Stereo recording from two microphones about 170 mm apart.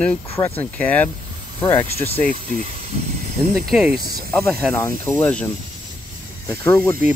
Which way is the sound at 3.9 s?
65° right (ahead or behind).